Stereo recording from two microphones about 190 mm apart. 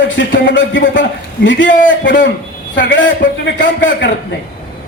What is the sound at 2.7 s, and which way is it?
A man's voice, 75° left (ahead or behind).